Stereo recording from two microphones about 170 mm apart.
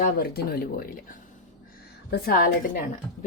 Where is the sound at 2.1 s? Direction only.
60° left (ahead or behind).